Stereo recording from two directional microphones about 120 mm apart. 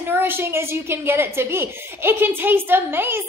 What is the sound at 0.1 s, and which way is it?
A woman's voice, 20° right (ahead or behind).